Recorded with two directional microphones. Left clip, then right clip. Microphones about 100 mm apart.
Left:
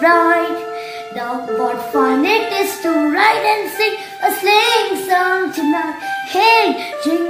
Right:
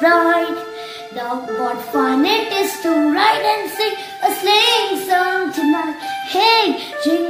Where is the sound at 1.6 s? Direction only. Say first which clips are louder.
Left 3 dB; centre (ahead or behind).